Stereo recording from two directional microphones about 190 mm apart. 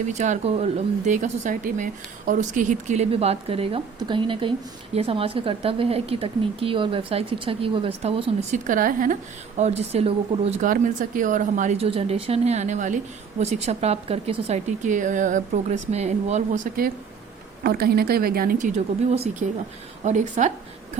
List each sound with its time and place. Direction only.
0.0 s speech: 40° right (ahead or behind)
9.6 s a woman's voice: 35° right (ahead or behind)
19.1 s speech: 35° right (ahead or behind)